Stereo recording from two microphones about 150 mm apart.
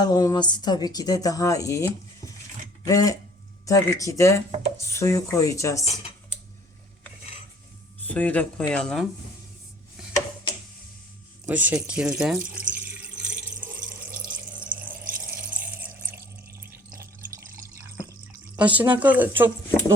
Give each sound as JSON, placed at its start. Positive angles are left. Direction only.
{"t": 0.0, "sound": "speech", "side_deg": 25}
{"t": 8.0, "sound": "speech", "side_deg": 10}
{"t": 11.4, "sound": "speech", "side_deg": -10}
{"t": 12.7, "sound": "water tap", "side_deg": -10}
{"t": 15.0, "sound": "water", "side_deg": -70}
{"t": 15.4, "sound": "water tap", "side_deg": -15}
{"t": 18.5, "sound": "speech", "side_deg": -10}